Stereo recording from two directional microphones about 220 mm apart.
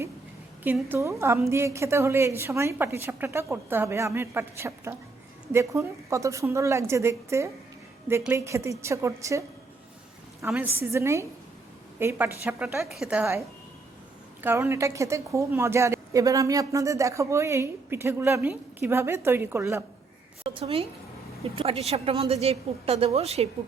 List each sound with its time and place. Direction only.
0.6 s a woman's voice: 10° right (ahead or behind)
10.4 s a woman's voice: 10° right (ahead or behind)
14.4 s a woman's voice: 10° right (ahead or behind)
20.4 s a sound: 25° right (ahead or behind)
21.5 s a woman's voice: 25° right (ahead or behind)